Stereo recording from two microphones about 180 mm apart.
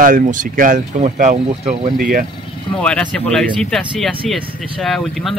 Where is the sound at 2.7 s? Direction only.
5° left (ahead or behind).